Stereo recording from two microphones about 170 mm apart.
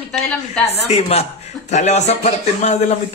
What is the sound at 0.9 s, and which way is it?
A man's voice, 40° left (ahead or behind).